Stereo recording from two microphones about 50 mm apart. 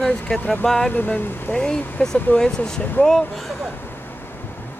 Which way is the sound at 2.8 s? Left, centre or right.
Left.